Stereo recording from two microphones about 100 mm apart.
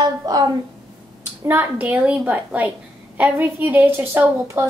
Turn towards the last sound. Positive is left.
turn(degrees=-20)  # may be behind; listen again after turning